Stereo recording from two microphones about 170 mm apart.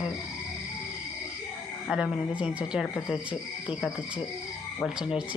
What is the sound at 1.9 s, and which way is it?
Speech, 5° right (ahead or behind).